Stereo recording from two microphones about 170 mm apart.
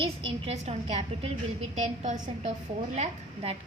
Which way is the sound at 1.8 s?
50° right (ahead or behind).